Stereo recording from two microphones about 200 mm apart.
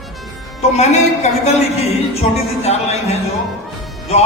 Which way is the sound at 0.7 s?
35° left (ahead or behind).